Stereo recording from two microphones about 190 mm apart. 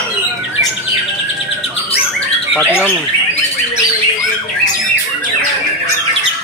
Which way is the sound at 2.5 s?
10° left (ahead or behind).